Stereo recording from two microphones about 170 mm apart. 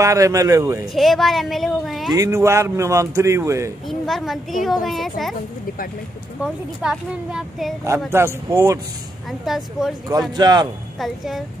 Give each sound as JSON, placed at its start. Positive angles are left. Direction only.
{"t": 0.0, "sound": "speech", "side_deg": -20}
{"t": 0.9, "sound": "speech", "side_deg": 0}
{"t": 2.1, "sound": "speech", "side_deg": -20}
{"t": 3.8, "sound": "speech", "side_deg": 0}
{"t": 6.4, "sound": "speech", "side_deg": -5}
{"t": 8.1, "sound": "speech", "side_deg": -15}
{"t": 9.5, "sound": "speech", "side_deg": 0}
{"t": 10.3, "sound": "a man's voice", "side_deg": -25}
{"t": 11.0, "sound": "speech", "side_deg": 0}